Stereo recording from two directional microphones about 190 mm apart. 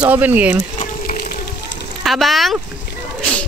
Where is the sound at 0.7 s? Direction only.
40° left (ahead or behind).